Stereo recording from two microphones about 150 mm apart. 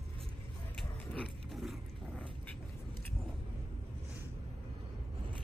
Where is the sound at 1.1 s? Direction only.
Centre (ahead or behind).